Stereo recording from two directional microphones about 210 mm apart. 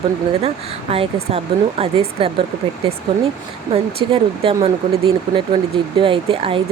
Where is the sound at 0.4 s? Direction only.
30° right (ahead or behind).